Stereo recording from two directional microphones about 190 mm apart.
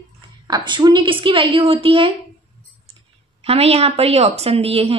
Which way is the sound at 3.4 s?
30° right (ahead or behind).